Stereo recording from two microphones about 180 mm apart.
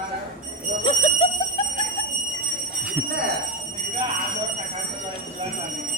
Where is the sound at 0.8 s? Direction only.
30° left (ahead or behind).